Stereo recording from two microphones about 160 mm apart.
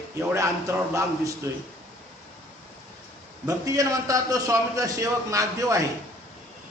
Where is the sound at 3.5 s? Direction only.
20° right (ahead or behind).